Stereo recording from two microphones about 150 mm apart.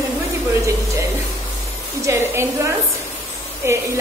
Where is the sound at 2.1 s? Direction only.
20° right (ahead or behind).